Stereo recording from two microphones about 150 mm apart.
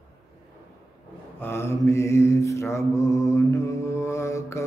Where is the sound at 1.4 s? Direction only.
15° left (ahead or behind).